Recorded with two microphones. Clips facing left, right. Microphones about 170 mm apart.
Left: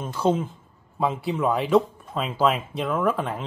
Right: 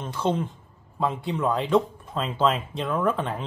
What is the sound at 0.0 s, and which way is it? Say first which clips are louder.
Speech: left 3 dB; 10° left (ahead or behind).